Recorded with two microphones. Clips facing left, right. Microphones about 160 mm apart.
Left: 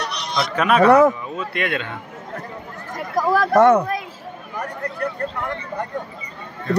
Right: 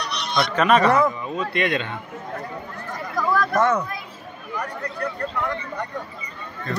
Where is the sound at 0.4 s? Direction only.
5° left (ahead or behind).